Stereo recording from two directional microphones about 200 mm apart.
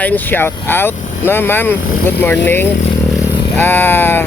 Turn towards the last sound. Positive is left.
turn(degrees=10)  # may be behind; listen again after turning